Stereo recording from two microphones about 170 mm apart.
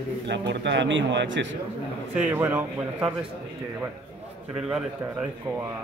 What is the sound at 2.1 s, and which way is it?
Speech, 10° right (ahead or behind).